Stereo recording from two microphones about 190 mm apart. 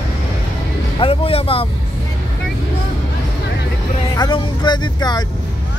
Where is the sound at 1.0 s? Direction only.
30° left (ahead or behind).